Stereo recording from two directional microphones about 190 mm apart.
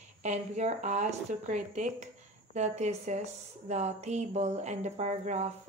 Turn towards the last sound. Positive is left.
turn(degrees=-35)  # may be behind; listen again after turning